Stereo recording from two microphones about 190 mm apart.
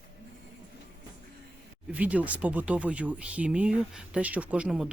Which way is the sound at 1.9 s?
5° right (ahead or behind).